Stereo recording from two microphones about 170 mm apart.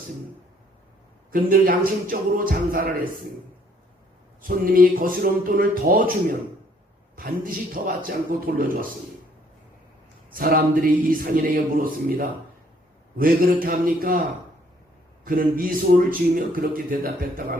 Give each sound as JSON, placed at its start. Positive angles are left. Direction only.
{"t": 1.3, "sound": "a man's voice", "side_deg": -55}
{"t": 4.4, "sound": "a man's voice", "side_deg": -55}
{"t": 7.2, "sound": "a man's voice", "side_deg": -60}
{"t": 11.1, "sound": "a man's voice", "side_deg": -55}
{"t": 15.2, "sound": "a man's voice", "side_deg": -55}